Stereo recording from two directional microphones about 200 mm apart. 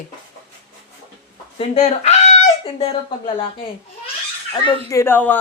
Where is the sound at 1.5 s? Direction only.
35° left (ahead or behind).